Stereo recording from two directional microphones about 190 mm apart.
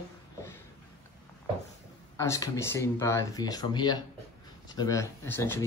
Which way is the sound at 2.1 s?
15° left (ahead or behind).